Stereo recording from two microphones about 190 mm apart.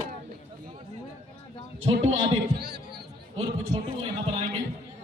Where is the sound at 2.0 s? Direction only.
60° right (ahead or behind).